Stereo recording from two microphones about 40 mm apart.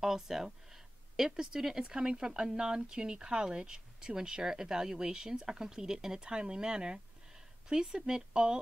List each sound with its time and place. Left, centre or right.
0.0 s speech: centre